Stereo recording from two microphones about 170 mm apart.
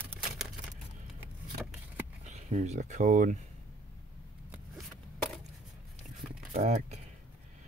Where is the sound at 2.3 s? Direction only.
40° right (ahead or behind).